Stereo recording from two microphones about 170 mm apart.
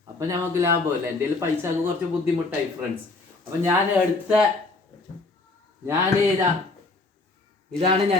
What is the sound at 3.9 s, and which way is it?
Speech, 10° right (ahead or behind).